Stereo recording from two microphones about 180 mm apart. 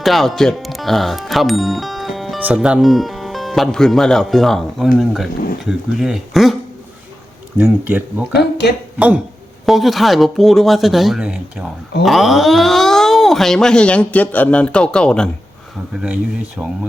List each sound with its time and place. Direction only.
0.0 s speech: centre (ahead or behind)
7.6 s speech: 10° right (ahead or behind)
8.3 s speech: 65° left (ahead or behind)
9.0 s speech: 5° right (ahead or behind)
16.6 s speech: 10° right (ahead or behind)